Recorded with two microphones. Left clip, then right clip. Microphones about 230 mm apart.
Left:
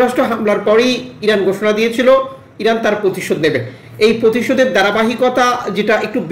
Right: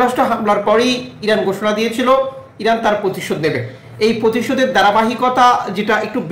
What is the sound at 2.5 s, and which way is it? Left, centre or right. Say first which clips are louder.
Speech: left 1 dB; right.